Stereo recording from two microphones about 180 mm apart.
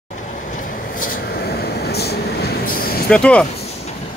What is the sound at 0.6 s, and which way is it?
Vehicle, 50° left (ahead or behind).